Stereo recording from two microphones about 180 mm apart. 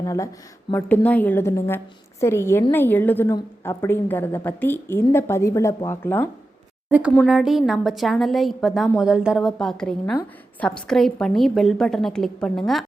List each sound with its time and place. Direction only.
0.0 s a woman's voice: 20° left (ahead or behind)
6.9 s a woman's voice: 10° right (ahead or behind)